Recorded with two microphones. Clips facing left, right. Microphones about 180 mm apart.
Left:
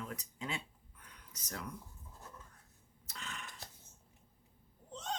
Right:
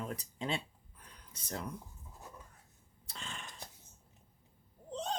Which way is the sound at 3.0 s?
30° right (ahead or behind).